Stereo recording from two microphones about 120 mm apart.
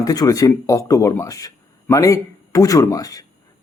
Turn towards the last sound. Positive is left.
turn(degrees=30)  # may be behind; listen again after turning